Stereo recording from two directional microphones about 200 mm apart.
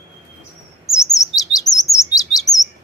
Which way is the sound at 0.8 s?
15° left (ahead or behind).